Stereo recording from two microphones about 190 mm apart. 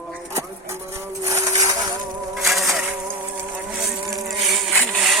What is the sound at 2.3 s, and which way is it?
Insect, centre (ahead or behind).